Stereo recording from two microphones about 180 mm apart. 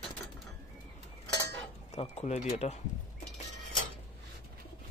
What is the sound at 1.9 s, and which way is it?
Speech, 35° left (ahead or behind).